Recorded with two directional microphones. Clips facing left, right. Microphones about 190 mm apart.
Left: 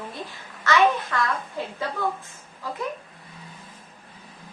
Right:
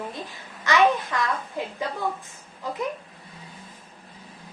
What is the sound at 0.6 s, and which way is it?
Speech, 15° right (ahead or behind).